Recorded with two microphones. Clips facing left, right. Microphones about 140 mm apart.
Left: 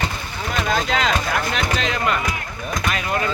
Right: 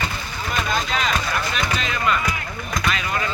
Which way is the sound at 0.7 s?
90° left.